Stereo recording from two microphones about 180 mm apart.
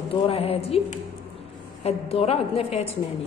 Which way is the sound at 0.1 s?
35° left (ahead or behind).